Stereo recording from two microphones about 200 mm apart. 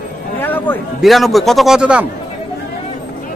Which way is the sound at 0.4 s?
10° left (ahead or behind).